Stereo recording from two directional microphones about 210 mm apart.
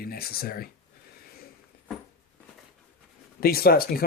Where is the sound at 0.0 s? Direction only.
45° left (ahead or behind).